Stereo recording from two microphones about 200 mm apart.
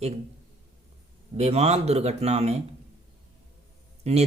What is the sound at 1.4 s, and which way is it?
Speech, 30° right (ahead or behind).